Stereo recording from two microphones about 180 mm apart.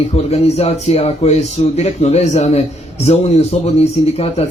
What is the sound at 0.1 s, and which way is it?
Speech, 35° left (ahead or behind).